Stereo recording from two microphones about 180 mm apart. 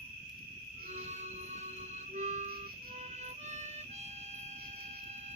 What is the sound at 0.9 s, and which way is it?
Music, 40° right (ahead or behind).